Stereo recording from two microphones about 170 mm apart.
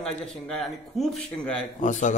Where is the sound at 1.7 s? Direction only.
45° left (ahead or behind).